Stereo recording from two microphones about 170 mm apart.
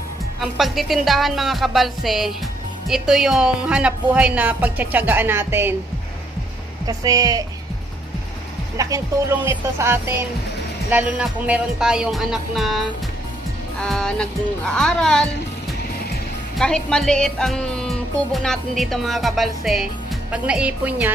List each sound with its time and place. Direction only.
0.4 s speech: centre (ahead or behind)
6.9 s a woman's voice: 20° right (ahead or behind)
8.7 s a woman's voice: 20° right (ahead or behind); by 15.2 s 5° left (ahead or behind)
16.5 s speech: 5° left (ahead or behind)